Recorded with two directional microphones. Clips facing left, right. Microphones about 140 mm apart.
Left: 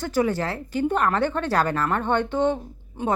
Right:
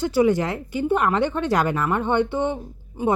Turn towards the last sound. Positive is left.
turn(degrees=-10)  # may be behind; listen again after turning